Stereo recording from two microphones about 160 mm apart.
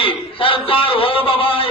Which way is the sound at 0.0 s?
35° left (ahead or behind).